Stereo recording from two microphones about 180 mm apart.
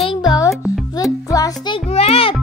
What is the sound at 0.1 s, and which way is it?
Music, 20° left (ahead or behind).